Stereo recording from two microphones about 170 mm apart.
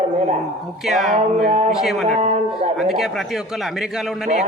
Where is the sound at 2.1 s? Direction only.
45° right (ahead or behind).